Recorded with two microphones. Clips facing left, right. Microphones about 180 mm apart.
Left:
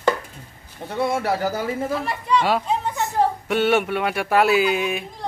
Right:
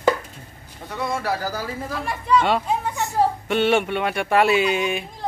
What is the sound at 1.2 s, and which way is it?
Speech, 25° left (ahead or behind).